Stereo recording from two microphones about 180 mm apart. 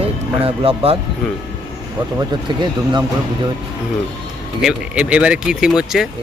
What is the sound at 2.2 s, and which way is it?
Speech, 25° right (ahead or behind).